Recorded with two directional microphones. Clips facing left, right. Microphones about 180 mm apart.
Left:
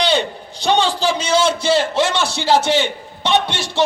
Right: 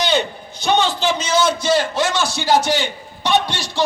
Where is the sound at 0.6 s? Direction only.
35° left (ahead or behind).